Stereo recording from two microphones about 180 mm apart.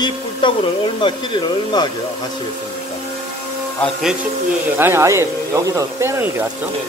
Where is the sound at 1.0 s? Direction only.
25° left (ahead or behind).